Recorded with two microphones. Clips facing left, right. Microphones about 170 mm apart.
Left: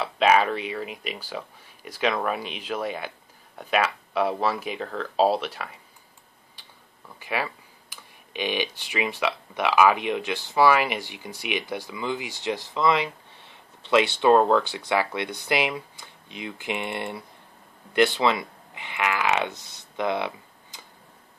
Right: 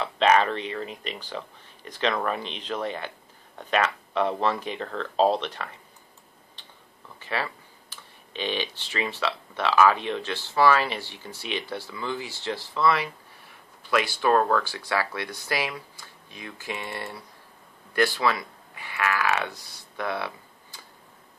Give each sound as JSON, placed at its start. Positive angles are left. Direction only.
{"t": 0.0, "sound": "speech", "side_deg": 10}
{"t": 7.2, "sound": "speech", "side_deg": 10}